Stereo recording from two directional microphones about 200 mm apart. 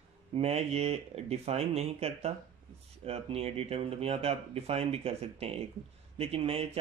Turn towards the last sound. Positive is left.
turn(degrees=-30)  # may be behind; listen again after turning